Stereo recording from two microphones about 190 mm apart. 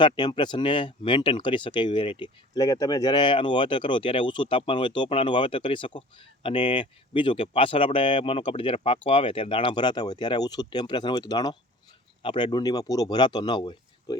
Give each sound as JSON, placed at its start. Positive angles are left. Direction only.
{"t": 0.0, "sound": "speech", "side_deg": 25}